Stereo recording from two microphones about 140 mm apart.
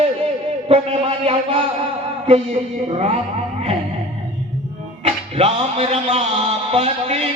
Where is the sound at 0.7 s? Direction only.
45° right (ahead or behind).